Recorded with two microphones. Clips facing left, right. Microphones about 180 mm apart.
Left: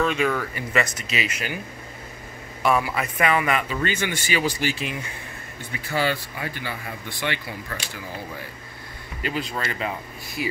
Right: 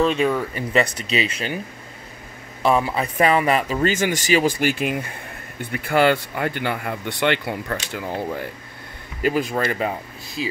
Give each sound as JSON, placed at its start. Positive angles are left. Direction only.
{"t": 0.0, "sound": "speech", "side_deg": -30}
{"t": 2.6, "sound": "speech", "side_deg": -25}
{"t": 10.4, "sound": "speech", "side_deg": -20}